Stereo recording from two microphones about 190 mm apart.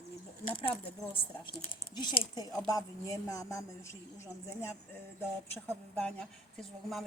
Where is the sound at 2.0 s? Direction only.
20° left (ahead or behind).